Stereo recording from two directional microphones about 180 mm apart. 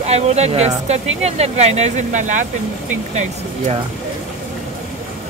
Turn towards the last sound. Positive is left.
turn(degrees=-40)  # may be behind; listen again after turning